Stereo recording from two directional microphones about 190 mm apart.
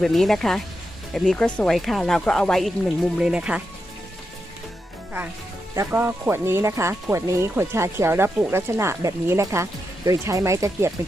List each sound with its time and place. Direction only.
0.0 s speech: centre (ahead or behind)
5.7 s speech: 10° right (ahead or behind)